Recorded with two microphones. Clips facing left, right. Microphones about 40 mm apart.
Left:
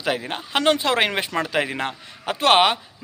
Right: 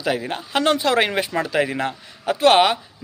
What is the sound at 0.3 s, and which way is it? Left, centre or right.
Speech, left.